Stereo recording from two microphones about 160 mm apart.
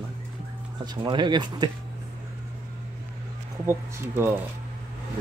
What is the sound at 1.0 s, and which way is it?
Speech, 30° right (ahead or behind).